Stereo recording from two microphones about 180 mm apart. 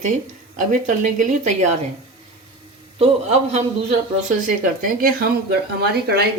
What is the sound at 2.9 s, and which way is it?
A man's voice, 35° right (ahead or behind).